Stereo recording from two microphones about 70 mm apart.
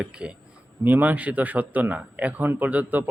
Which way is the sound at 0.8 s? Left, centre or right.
Right.